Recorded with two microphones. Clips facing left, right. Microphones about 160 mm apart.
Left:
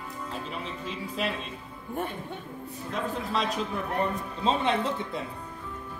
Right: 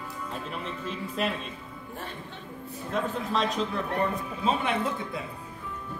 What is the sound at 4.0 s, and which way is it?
Speech, 25° left (ahead or behind).